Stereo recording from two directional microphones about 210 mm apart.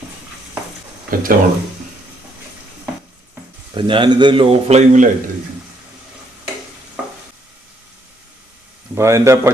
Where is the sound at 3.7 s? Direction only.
25° right (ahead or behind).